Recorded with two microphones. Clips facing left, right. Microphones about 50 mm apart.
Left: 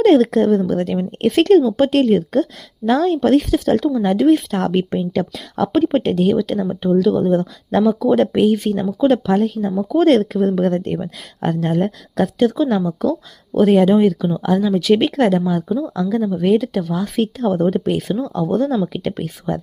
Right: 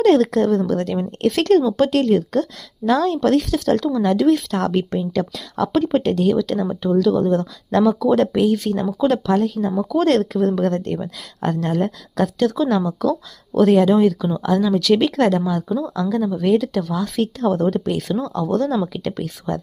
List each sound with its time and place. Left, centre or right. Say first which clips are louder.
0.0 s speech: left 2 dB; centre
1.5 s speech: left 3 dB; centre
1.7 s speech: left 2 dB; left